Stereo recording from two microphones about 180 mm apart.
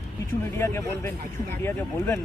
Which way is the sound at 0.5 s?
15° left (ahead or behind).